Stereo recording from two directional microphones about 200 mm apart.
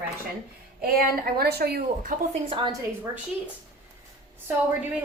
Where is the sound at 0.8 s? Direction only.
50° right (ahead or behind).